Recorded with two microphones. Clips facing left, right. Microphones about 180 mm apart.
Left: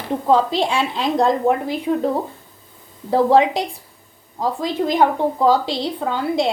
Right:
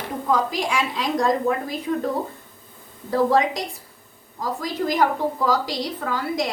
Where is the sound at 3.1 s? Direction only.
30° left (ahead or behind).